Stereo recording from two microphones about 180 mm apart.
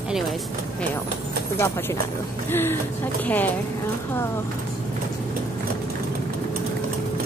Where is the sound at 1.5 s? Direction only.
15° left (ahead or behind).